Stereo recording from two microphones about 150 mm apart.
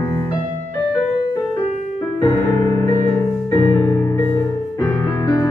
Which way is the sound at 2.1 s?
25° left (ahead or behind).